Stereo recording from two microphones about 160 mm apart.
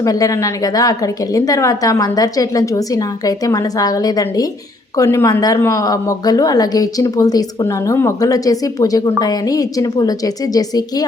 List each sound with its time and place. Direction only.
0.0 s a woman's voice: 20° left (ahead or behind)